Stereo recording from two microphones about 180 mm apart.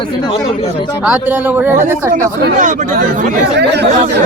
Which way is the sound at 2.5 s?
45° right (ahead or behind).